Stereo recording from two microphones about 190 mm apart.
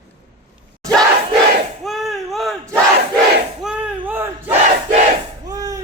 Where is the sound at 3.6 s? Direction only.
5° right (ahead or behind).